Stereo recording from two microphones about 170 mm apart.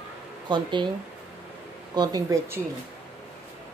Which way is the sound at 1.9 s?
20° right (ahead or behind).